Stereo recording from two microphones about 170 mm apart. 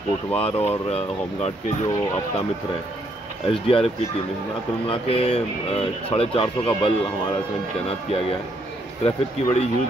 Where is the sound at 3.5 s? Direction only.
30° left (ahead or behind).